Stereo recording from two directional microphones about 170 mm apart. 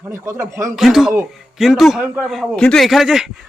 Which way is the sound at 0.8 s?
Centre (ahead or behind).